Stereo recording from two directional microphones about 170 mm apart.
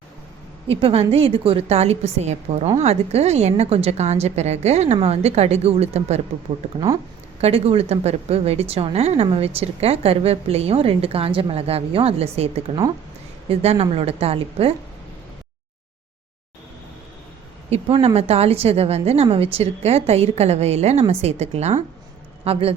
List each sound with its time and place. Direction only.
0.8 s a woman's voice: 35° right (ahead or behind)
7.4 s a woman's voice: 35° right (ahead or behind)
17.7 s a woman's voice: 35° right (ahead or behind)